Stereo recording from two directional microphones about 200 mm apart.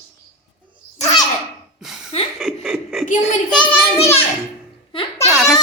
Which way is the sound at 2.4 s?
Centre (ahead or behind).